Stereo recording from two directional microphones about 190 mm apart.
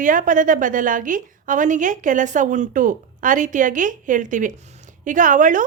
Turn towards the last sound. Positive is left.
turn(degrees=-45)  # may be behind; listen again after turning